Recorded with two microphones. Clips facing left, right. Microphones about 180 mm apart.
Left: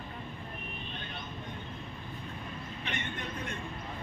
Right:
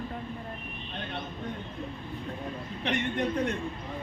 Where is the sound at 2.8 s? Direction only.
65° right (ahead or behind).